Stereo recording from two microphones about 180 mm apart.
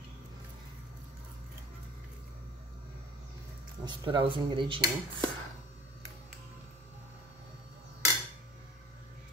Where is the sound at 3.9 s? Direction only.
25° right (ahead or behind).